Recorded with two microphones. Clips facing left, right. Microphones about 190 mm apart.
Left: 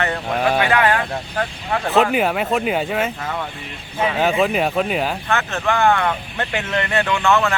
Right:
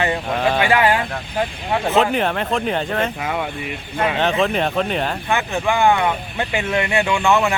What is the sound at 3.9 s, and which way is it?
Speech, 5° left (ahead or behind).